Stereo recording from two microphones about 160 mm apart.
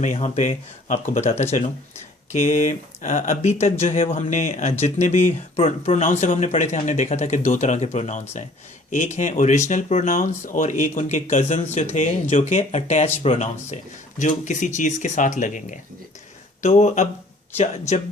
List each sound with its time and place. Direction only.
0.0 s speech: 50° left (ahead or behind)